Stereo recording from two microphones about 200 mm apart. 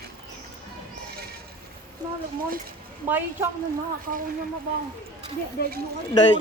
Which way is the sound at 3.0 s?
10° right (ahead or behind).